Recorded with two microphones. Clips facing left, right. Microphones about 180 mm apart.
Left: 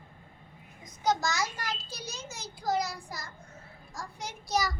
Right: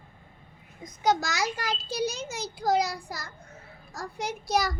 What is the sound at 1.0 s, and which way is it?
A child's voice, 70° right (ahead or behind).